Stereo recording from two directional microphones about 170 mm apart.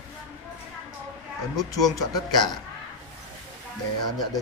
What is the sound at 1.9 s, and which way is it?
Speech, 25° left (ahead or behind).